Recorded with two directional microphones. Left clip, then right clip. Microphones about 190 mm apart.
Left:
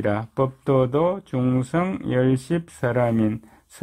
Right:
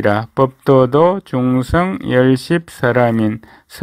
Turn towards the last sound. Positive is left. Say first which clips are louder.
# right 8 dB
turn(degrees=-15)  # may be behind; listen again after turning